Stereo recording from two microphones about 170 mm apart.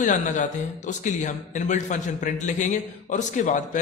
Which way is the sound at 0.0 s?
45° left (ahead or behind).